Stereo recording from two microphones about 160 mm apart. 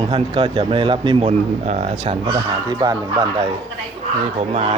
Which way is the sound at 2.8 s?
25° right (ahead or behind).